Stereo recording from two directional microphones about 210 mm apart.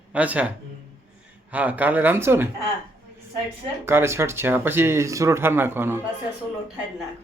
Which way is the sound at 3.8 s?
10° right (ahead or behind).